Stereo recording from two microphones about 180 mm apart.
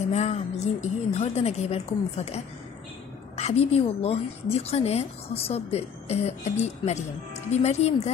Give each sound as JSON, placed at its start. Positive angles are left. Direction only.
{"t": 0.1, "sound": "a woman's voice", "side_deg": 40}